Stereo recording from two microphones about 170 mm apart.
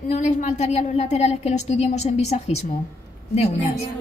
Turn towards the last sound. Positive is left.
turn(degrees=35)  # may be behind; listen again after turning